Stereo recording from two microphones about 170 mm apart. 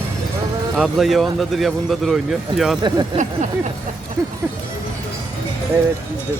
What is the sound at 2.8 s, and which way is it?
Speech, 25° right (ahead or behind).